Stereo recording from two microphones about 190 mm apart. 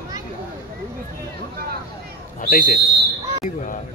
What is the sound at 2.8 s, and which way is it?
Speech, 55° right (ahead or behind).